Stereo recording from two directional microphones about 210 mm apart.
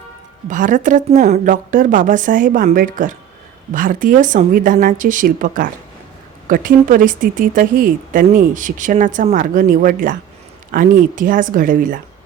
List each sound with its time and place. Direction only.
0.4 s speech: 40° right (ahead or behind)